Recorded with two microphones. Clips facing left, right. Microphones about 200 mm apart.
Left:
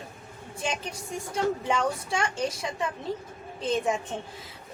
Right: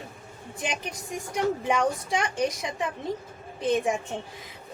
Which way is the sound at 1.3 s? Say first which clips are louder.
Right 2 dB; 15° right (ahead or behind).